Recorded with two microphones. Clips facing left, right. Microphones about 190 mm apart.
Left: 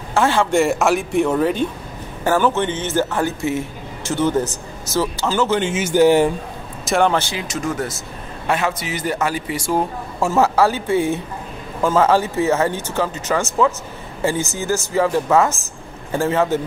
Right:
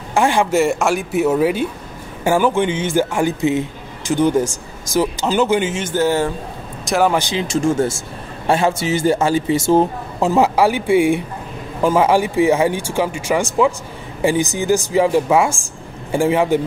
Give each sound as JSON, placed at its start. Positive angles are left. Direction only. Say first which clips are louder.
{"t": 0.1, "sound": "speech", "louder": "right 1 dB", "side_deg": -15}
{"t": 0.6, "sound": "speech", "louder": "even", "side_deg": 0}
{"t": 5.7, "sound": "speech", "louder": "left 4 dB", "side_deg": 5}
{"t": 6.8, "sound": "a sound", "louder": "right 1 dB", "side_deg": 0}
{"t": 7.1, "sound": "speech", "louder": "right 2 dB", "side_deg": -15}
{"t": 7.4, "sound": "speech", "louder": "right 7 dB", "side_deg": -30}